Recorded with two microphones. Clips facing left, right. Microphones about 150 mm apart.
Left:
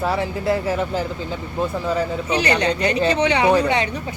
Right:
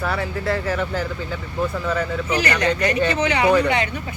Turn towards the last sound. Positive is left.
turn(degrees=30)  # may be behind; listen again after turning